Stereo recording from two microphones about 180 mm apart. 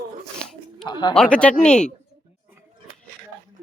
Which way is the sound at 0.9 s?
25° left (ahead or behind).